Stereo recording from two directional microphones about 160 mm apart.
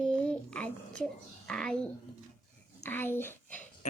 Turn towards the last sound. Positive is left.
turn(degrees=10)  # may be behind; listen again after turning